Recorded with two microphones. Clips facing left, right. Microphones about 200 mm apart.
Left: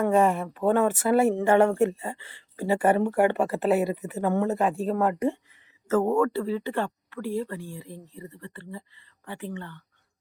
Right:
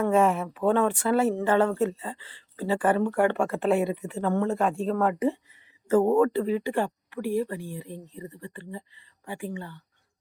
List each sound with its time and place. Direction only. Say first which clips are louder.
0.0 s speech: even; centre (ahead or behind)
5.9 s speech: right 2 dB; 15° right (ahead or behind)